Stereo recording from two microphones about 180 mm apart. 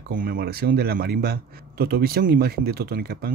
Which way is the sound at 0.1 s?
55° right (ahead or behind).